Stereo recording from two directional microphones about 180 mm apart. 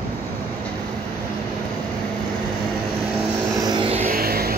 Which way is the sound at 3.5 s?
25° right (ahead or behind).